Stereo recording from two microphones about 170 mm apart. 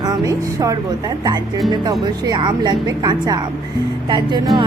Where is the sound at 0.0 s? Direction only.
20° right (ahead or behind).